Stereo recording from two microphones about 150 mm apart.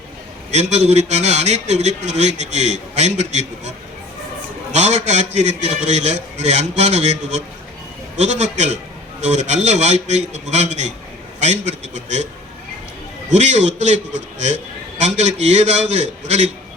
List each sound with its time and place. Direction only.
0.5 s a man's voice: 45° right (ahead or behind)
13.3 s a man's voice: 50° right (ahead or behind)
15.1 s a man's voice: 50° right (ahead or behind)